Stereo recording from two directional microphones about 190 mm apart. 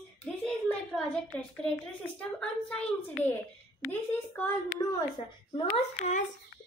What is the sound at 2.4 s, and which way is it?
Speech, 5° left (ahead or behind).